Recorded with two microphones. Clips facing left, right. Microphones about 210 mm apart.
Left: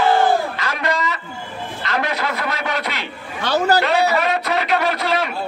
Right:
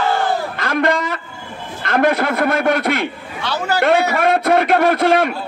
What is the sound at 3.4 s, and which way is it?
Speech, 40° left (ahead or behind).